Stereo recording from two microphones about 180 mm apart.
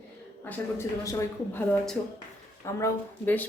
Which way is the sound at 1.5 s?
5° left (ahead or behind).